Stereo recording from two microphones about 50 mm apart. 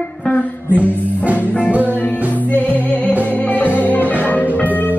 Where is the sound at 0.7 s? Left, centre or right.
Right.